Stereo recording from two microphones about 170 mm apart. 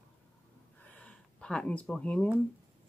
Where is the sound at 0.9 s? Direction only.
5° left (ahead or behind).